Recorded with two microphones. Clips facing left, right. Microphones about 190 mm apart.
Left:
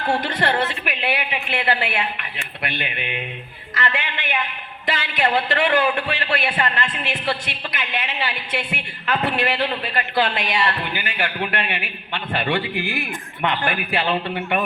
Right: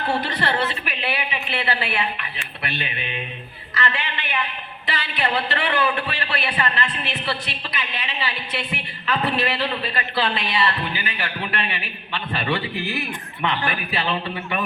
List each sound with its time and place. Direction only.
0.3 s a man's voice: 50° left (ahead or behind)